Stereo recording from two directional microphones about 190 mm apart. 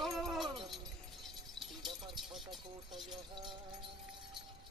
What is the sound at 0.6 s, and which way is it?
Keys jangling, centre (ahead or behind).